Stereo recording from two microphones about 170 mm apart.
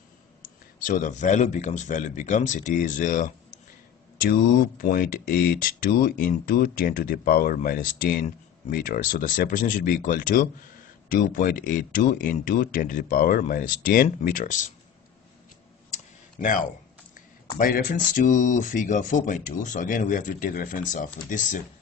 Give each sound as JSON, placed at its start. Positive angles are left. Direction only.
{"t": 0.4, "sound": "speech", "side_deg": 50}
{"t": 15.9, "sound": "tick", "side_deg": 50}
{"t": 17.6, "sound": "speech", "side_deg": 55}